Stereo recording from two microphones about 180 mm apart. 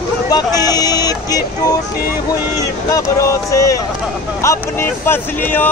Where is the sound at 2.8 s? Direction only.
20° left (ahead or behind).